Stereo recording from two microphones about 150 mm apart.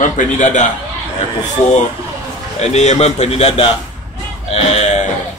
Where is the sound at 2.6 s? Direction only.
45° left (ahead or behind).